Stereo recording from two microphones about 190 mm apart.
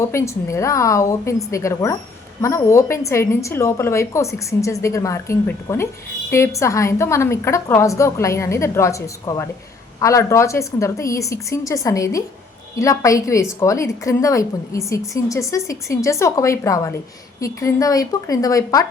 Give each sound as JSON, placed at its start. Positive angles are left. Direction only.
{"t": 0.0, "sound": "a woman's voice", "side_deg": 15}